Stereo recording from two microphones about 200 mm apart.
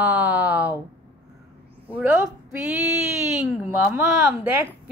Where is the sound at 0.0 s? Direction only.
5° right (ahead or behind).